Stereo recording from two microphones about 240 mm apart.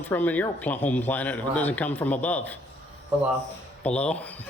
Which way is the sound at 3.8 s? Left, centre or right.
Centre.